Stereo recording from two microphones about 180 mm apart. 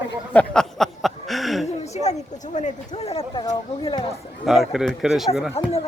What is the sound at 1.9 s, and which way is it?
Speech, 40° left (ahead or behind).